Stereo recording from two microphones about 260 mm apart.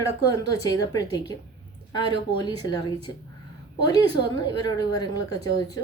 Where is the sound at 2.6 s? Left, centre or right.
Centre.